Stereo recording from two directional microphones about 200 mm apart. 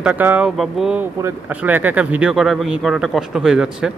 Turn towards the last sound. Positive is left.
turn(degrees=-5)  # may be behind; listen again after turning